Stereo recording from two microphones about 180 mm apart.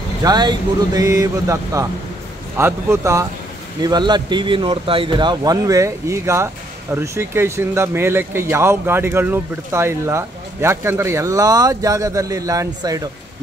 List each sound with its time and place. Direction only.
0.2 s speech: 25° right (ahead or behind)